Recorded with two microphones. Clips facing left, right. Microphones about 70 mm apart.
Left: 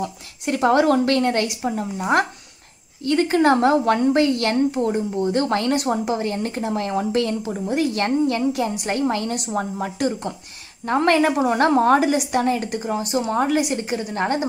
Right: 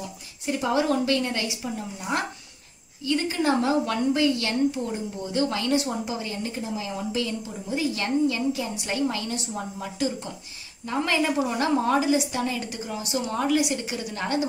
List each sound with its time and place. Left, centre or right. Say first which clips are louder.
0.0 s a woman's voice: left 7 dB; left
9.3 s a woman's voice: left 7 dB; left